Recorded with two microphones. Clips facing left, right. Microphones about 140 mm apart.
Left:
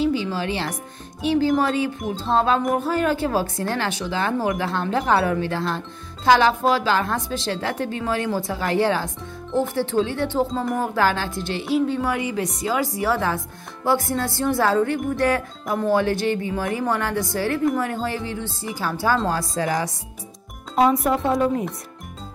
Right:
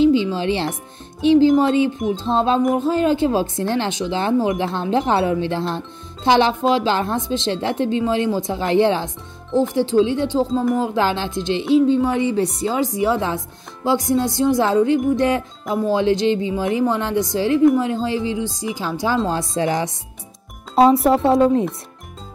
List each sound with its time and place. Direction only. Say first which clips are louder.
0.0 s music: right 6 dB; 25° right (ahead or behind)
1.2 s speech: right 6 dB; 25° right (ahead or behind)
2.0 s music: right 5 dB; 5° left (ahead or behind)
2.3 s speech: right 2 dB; 25° right (ahead or behind)
10.5 s music: right 6 dB; centre (ahead or behind)
10.8 s speech: right 2 dB; 25° right (ahead or behind)